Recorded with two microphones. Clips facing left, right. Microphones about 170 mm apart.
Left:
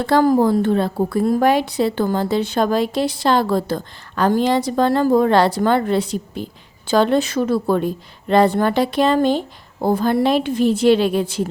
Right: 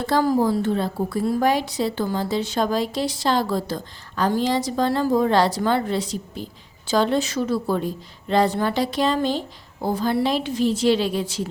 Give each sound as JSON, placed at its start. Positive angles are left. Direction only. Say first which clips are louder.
{"t": 0.0, "sound": "a woman's voice", "louder": "left 5 dB", "side_deg": 60}